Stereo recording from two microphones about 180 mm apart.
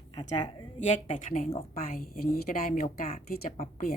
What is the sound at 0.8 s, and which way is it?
Speech, 40° left (ahead or behind).